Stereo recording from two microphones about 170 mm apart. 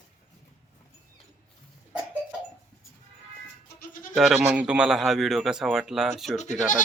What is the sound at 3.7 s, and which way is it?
Goat, 55° left (ahead or behind).